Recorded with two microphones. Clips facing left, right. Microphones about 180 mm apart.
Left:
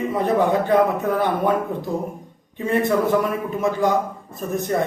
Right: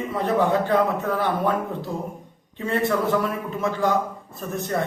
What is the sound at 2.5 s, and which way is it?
A man's voice, 15° left (ahead or behind).